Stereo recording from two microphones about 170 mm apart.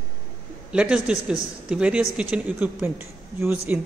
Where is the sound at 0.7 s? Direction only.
5° right (ahead or behind).